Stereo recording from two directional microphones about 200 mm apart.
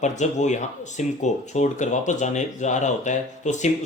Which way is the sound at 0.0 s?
35° left (ahead or behind).